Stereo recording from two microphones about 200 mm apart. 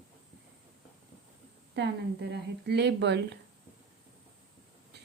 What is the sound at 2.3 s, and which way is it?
A woman's voice, 55° right (ahead or behind).